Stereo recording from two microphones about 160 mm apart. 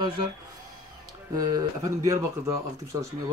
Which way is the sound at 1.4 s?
25° right (ahead or behind).